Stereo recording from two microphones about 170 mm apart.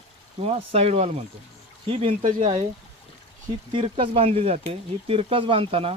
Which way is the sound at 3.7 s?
30° right (ahead or behind).